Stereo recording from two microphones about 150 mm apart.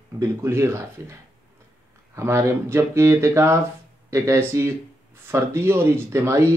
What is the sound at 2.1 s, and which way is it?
Speech, 20° right (ahead or behind).